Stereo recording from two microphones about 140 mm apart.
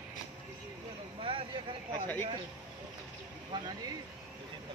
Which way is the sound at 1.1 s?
40° right (ahead or behind).